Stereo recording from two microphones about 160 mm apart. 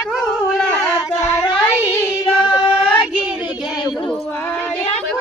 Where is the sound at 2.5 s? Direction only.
35° left (ahead or behind).